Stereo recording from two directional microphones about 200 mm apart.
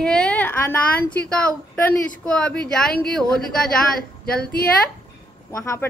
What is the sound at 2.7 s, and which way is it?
Speech, 5° left (ahead or behind).